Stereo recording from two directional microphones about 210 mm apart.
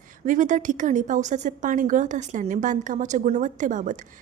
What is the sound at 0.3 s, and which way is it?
A woman's voice, 35° right (ahead or behind).